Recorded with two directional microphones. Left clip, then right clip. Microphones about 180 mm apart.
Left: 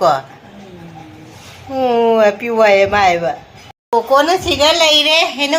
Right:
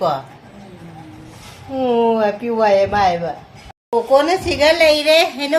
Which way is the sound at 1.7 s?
20° left (ahead or behind).